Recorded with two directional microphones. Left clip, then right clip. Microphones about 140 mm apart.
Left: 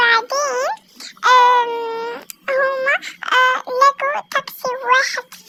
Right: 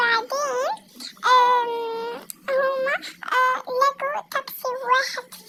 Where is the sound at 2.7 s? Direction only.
20° left (ahead or behind).